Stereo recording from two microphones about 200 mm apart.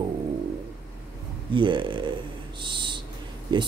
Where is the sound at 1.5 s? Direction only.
25° right (ahead or behind).